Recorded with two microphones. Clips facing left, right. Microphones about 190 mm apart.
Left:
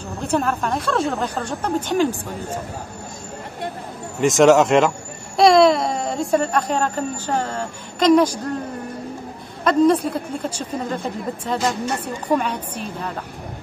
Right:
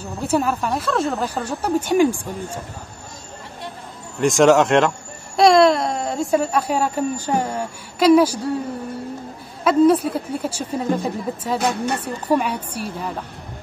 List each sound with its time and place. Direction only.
0.3 s speech: 5° right (ahead or behind)
4.2 s speech: centre (ahead or behind)
9.7 s speech: 5° right (ahead or behind)
11.6 s speech: 60° right (ahead or behind)
12.0 s a woman's voice: 10° right (ahead or behind)